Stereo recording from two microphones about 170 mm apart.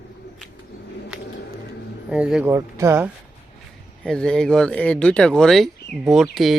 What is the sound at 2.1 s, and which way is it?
Speech, 5° right (ahead or behind).